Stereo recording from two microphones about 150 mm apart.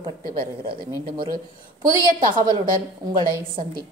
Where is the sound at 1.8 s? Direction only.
30° right (ahead or behind).